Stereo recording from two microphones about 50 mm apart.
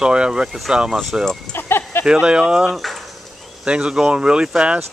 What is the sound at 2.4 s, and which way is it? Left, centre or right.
Speech, centre.